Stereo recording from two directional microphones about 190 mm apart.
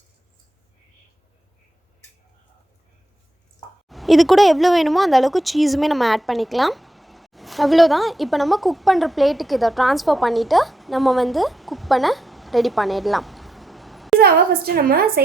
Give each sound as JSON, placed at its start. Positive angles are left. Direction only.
{"t": 3.8, "sound": "speech", "side_deg": 0}
{"t": 14.2, "sound": "a woman's voice", "side_deg": -55}